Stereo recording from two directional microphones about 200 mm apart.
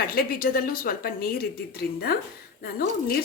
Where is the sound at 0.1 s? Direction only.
45° left (ahead or behind).